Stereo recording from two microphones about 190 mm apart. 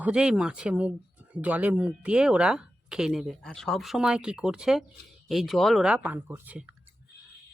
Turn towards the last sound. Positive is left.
turn(degrees=-5)  # may be behind; listen again after turning